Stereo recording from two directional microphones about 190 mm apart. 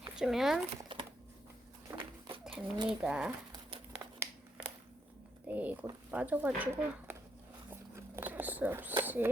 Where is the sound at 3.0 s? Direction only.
5° right (ahead or behind).